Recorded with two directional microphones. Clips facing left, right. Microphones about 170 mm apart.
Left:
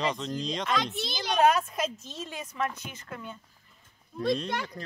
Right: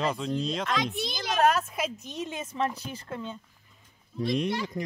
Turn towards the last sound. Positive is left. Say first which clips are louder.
# right 8 dB
turn(degrees=-20)  # may be behind; listen again after turning